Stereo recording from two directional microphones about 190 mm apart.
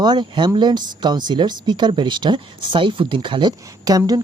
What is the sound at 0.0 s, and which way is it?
Speech, 25° right (ahead or behind).